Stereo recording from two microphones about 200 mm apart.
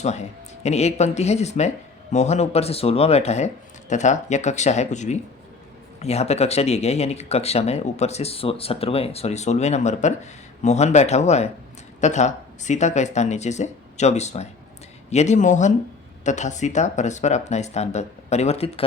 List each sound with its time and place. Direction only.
0.0 s speech: 35° left (ahead or behind)